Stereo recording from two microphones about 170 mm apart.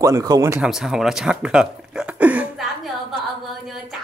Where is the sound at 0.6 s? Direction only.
Centre (ahead or behind).